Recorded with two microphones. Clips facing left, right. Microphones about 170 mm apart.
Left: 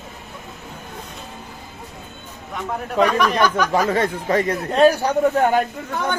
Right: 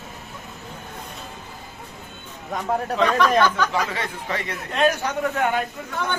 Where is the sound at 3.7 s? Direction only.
45° left (ahead or behind).